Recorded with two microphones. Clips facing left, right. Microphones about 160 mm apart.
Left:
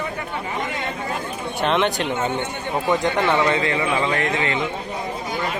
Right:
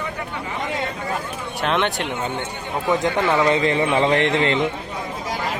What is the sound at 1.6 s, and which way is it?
Speech, centre (ahead or behind).